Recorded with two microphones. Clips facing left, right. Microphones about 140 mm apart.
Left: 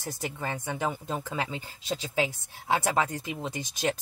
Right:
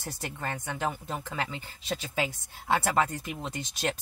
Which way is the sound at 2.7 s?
15° left (ahead or behind).